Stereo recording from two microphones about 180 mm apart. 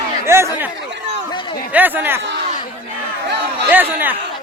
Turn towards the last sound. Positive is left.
turn(degrees=-10)  # may be behind; listen again after turning